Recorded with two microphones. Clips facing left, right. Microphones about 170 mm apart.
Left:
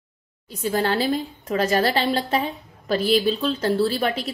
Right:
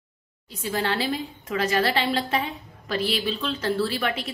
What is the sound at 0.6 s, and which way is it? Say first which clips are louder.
A woman's voice: left 4 dB; 40° left (ahead or behind).